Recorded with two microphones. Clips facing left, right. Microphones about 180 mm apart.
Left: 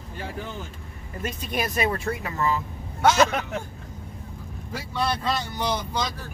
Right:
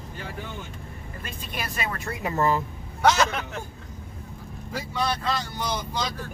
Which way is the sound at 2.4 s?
50° right (ahead or behind).